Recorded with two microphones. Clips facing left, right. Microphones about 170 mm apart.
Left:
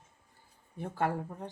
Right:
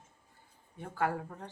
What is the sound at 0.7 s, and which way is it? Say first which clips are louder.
Speech: left 1 dB; 30° left (ahead or behind).